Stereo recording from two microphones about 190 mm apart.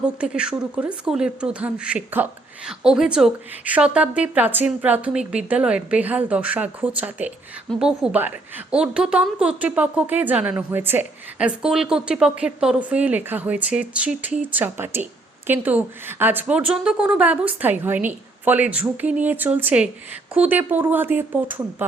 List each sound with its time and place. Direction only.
0.0 s a woman's voice: 5° right (ahead or behind)